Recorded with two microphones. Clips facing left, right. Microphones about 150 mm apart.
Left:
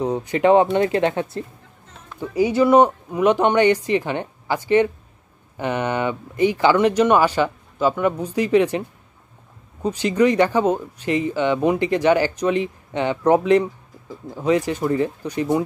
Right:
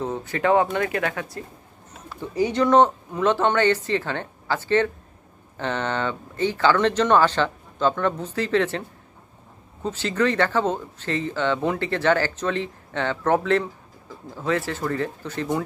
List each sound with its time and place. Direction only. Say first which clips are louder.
0.0 s speech: left 6 dB; 15° left (ahead or behind)
2.1 s speech: left 4 dB; 10° left (ahead or behind)
9.8 s speech: left 5 dB; 15° left (ahead or behind)